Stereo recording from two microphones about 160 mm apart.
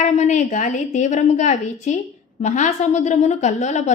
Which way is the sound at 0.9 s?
50° left (ahead or behind).